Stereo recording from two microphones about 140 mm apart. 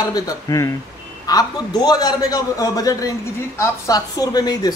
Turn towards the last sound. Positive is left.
turn(degrees=30)  # may be behind; listen again after turning